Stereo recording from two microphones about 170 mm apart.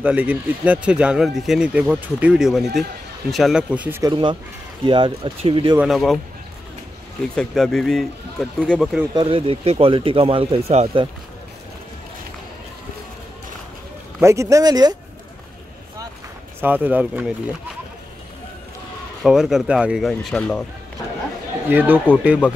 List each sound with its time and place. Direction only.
0.0 s speech: 10° right (ahead or behind)
4.0 s speech: 30° right (ahead or behind)
5.8 s speech: centre (ahead or behind)
7.3 s speech: 5° left (ahead or behind)
9.1 s speech: 30° right (ahead or behind)
14.2 s speech: 15° right (ahead or behind)
16.6 s speech: 10° right (ahead or behind)
19.2 s speech: centre (ahead or behind)
21.6 s speech: 10° right (ahead or behind)